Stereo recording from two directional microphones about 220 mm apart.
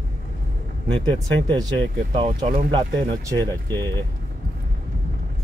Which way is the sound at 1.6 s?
20° right (ahead or behind).